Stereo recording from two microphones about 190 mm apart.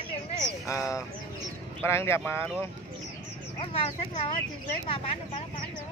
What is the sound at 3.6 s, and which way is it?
Speech, 30° left (ahead or behind).